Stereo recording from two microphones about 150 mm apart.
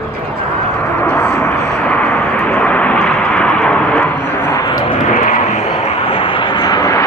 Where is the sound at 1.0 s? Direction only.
10° left (ahead or behind).